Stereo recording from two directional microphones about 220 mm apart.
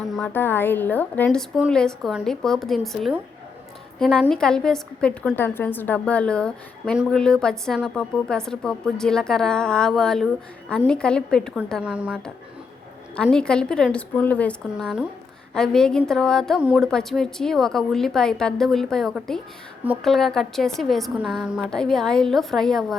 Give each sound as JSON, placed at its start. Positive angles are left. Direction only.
{"t": 0.0, "sound": "a woman's voice", "side_deg": 5}